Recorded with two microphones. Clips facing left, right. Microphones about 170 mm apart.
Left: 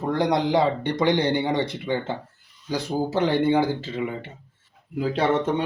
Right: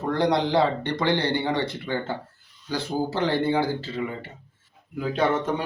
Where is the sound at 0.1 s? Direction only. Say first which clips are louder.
Even; 15° left (ahead or behind).